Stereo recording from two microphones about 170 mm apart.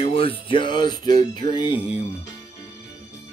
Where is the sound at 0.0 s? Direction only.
35° left (ahead or behind).